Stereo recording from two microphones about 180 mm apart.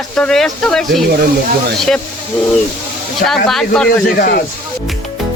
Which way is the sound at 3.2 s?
Centre (ahead or behind).